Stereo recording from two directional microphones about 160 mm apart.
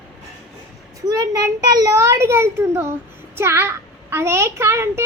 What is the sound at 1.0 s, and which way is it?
A child's voice, 20° right (ahead or behind).